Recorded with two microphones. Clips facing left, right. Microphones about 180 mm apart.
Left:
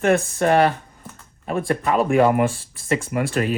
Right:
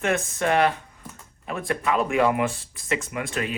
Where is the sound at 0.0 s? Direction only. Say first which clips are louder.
Left 6 dB; 35° left (ahead or behind).